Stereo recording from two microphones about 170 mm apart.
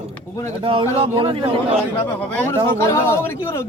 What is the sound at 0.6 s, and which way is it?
Speech, 30° right (ahead or behind).